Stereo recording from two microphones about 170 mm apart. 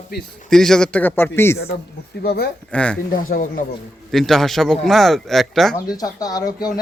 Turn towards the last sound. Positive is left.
turn(degrees=20)  # may be behind; listen again after turning